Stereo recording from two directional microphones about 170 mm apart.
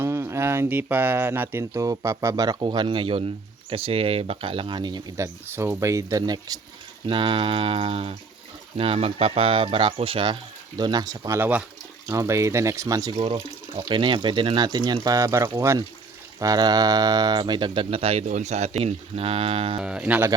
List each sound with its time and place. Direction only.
0.0 s speech: 15° right (ahead or behind); by 19.8 s 35° right (ahead or behind)
19.8 s speech: 5° right (ahead or behind)